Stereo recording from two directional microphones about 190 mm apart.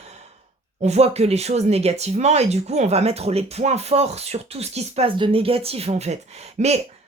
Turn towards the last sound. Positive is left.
turn(degrees=-35)  # may be behind; listen again after turning